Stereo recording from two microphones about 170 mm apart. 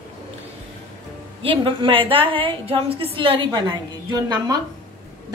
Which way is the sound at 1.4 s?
30° right (ahead or behind).